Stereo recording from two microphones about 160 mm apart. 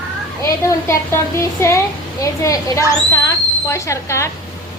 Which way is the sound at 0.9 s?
15° left (ahead or behind).